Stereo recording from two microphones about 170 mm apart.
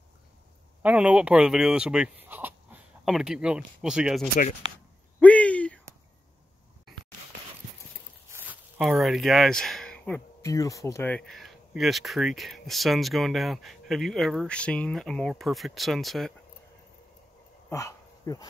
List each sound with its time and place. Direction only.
0.8 s speech: 5° right (ahead or behind)
5.2 s a sound: 10° left (ahead or behind)
8.3 s speech: 10° right (ahead or behind)
17.6 s dog: 15° left (ahead or behind)